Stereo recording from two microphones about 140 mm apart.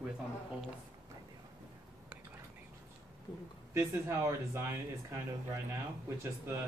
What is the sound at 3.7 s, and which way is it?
Speech, 20° right (ahead or behind).